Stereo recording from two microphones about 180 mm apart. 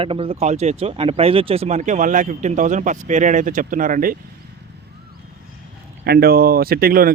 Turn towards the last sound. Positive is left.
turn(degrees=-55)  # may be behind; listen again after turning